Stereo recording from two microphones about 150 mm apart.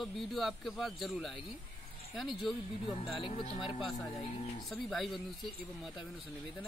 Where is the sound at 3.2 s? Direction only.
35° left (ahead or behind).